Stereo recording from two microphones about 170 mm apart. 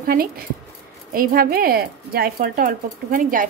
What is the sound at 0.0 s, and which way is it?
Speech, 60° right (ahead or behind).